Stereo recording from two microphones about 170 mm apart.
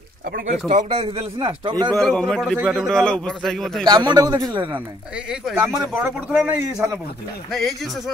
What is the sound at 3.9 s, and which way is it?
Speech, 25° right (ahead or behind).